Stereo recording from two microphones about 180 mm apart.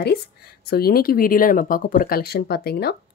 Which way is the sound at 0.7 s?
60° left (ahead or behind).